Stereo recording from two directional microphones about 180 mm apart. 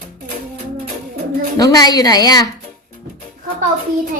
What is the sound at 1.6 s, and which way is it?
Speech, 20° left (ahead or behind).